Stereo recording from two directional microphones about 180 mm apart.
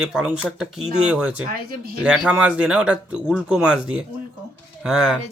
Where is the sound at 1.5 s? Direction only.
55° right (ahead or behind).